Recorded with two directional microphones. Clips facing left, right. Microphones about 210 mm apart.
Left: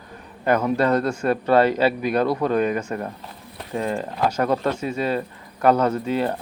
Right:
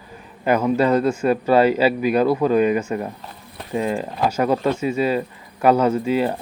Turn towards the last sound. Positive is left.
turn(degrees=-10)  # may be behind; listen again after turning